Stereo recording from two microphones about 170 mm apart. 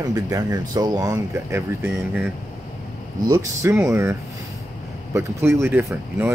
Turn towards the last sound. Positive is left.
turn(degrees=-15)  # may be behind; listen again after turning